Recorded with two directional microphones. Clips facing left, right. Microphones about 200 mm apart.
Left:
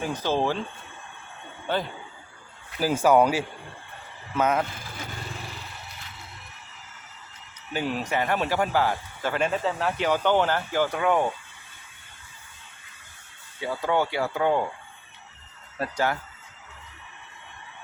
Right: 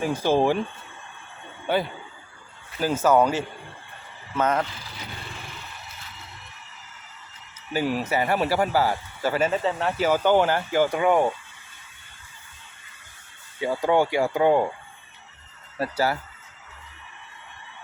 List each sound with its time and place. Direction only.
0.0 s speech: 10° right (ahead or behind)
1.6 s speech: 10° right (ahead or behind)
2.7 s speech: 10° left (ahead or behind)
4.6 s speech: 50° left (ahead or behind)
7.7 s speech: 5° right (ahead or behind)
13.6 s speech: 15° right (ahead or behind)
15.8 s speech: 5° right (ahead or behind)